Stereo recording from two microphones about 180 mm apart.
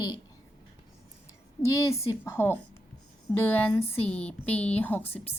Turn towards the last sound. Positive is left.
turn(degrees=10)  # may be behind; listen again after turning